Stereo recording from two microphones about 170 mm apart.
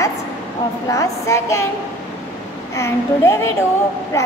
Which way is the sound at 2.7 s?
15° left (ahead or behind).